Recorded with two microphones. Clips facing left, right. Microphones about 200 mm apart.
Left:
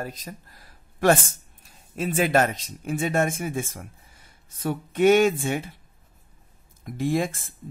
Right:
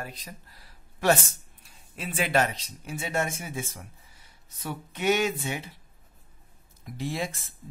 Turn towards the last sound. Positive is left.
turn(degrees=50)  # may be behind; listen again after turning